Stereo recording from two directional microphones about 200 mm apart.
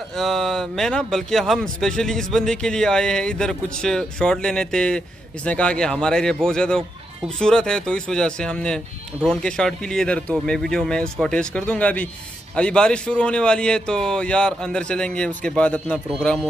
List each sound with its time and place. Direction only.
0.1 s speech: centre (ahead or behind)